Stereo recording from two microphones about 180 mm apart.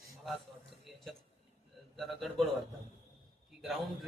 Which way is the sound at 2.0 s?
Centre (ahead or behind).